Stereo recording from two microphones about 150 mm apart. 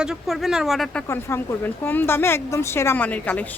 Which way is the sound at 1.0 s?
15° left (ahead or behind).